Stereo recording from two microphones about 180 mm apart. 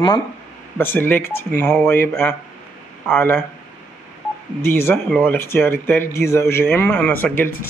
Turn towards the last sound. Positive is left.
turn(degrees=10)  # may be behind; listen again after turning